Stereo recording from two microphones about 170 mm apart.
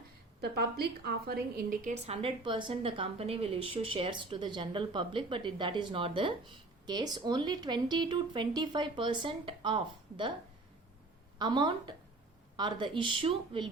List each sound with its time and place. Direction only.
0.4 s a woman's voice: 70° right (ahead or behind); by 10.3 s 30° right (ahead or behind)
11.3 s speech: 25° right (ahead or behind)